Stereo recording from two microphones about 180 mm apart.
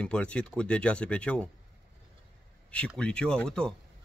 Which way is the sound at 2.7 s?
5° left (ahead or behind).